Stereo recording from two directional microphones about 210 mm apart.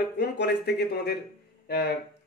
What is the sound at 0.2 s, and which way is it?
Speech, 50° left (ahead or behind).